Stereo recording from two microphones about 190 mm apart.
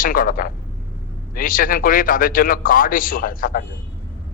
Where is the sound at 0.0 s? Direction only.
45° left (ahead or behind).